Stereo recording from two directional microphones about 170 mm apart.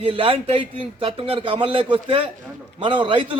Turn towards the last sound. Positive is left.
turn(degrees=-30)  # may be behind; listen again after turning